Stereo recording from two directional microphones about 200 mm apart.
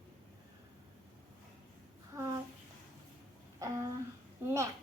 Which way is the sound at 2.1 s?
15° right (ahead or behind).